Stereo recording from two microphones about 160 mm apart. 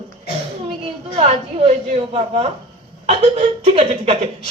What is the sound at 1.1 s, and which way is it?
A woman's voice, 40° right (ahead or behind).